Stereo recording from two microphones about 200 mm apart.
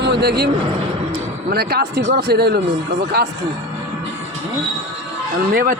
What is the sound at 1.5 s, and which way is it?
Speech, 50° right (ahead or behind).